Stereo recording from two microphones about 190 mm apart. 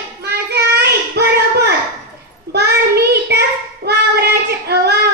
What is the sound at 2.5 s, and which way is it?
Child singing, 60° right (ahead or behind).